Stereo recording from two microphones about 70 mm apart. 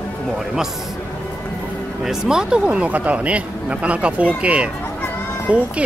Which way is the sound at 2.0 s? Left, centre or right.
Centre.